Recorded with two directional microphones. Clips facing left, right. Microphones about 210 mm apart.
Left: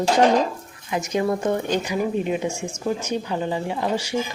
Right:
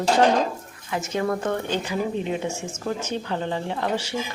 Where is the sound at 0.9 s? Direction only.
15° left (ahead or behind).